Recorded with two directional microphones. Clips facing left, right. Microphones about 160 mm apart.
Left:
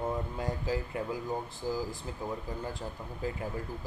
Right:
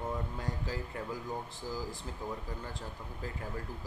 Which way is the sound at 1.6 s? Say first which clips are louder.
Left 7 dB; 15° left (ahead or behind).